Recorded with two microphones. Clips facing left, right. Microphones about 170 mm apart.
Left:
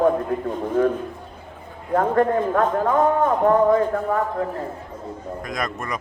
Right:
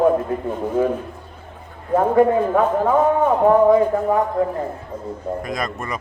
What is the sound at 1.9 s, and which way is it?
A man's voice, 10° right (ahead or behind).